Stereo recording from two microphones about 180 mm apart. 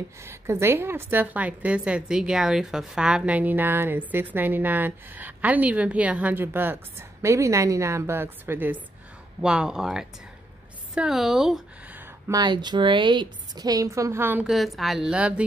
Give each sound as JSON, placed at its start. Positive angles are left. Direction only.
{"t": 0.2, "sound": "a woman's voice", "side_deg": -15}
{"t": 11.0, "sound": "a sound", "side_deg": 0}
{"t": 12.4, "sound": "a woman's voice", "side_deg": -25}